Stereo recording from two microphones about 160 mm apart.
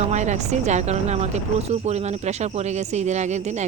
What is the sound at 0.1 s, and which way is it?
Speech, 45° right (ahead or behind).